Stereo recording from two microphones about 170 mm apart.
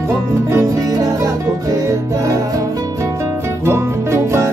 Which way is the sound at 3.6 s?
15° right (ahead or behind).